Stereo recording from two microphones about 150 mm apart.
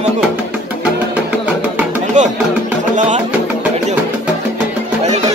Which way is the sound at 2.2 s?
55° right (ahead or behind).